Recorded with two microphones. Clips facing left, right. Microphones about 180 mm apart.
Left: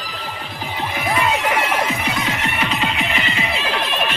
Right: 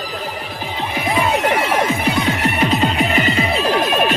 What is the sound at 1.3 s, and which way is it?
Music, 35° right (ahead or behind).